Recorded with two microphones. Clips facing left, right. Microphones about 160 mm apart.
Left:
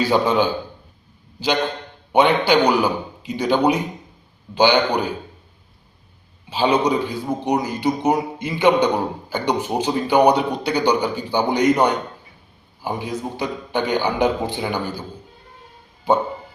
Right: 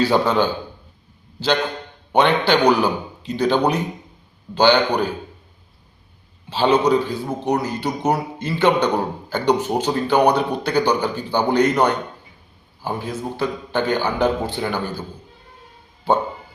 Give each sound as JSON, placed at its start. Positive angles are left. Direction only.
{"t": 0.0, "sound": "a man's voice", "side_deg": 10}
{"t": 2.1, "sound": "a man's voice", "side_deg": 10}
{"t": 6.5, "sound": "a man's voice", "side_deg": 10}